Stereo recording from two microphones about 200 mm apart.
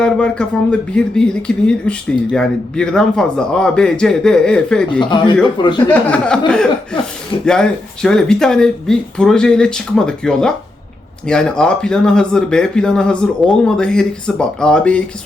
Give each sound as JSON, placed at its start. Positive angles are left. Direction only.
{"t": 0.0, "sound": "speech", "side_deg": 5}
{"t": 4.9, "sound": "speech", "side_deg": 25}
{"t": 5.9, "sound": "speech", "side_deg": 5}